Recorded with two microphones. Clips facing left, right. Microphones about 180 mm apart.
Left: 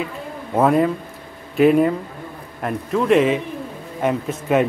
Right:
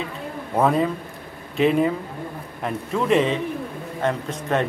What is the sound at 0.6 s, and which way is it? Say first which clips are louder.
Speech: left 3 dB; 5° left (ahead or behind).